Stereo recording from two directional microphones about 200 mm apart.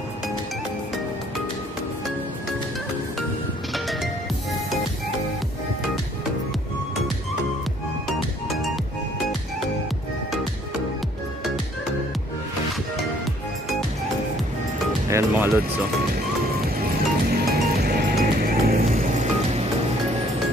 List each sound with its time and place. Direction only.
3.7 s music: centre (ahead or behind)
15.0 s speech: 10° right (ahead or behind)
16.8 s music: 50° right (ahead or behind)